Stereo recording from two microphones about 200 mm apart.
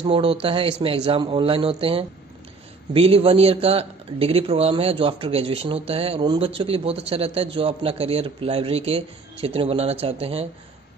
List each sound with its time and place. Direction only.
0.0 s a man's voice: 30° right (ahead or behind)